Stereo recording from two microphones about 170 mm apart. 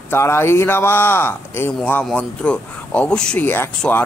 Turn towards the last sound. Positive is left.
turn(degrees=10)  # may be behind; listen again after turning